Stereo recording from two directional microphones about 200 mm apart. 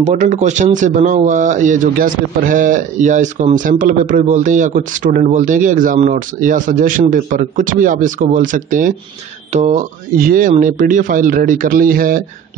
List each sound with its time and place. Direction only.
0.0 s speech: 35° right (ahead or behind)